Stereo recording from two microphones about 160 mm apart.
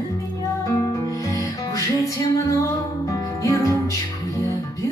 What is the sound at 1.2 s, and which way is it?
Music, 20° left (ahead or behind).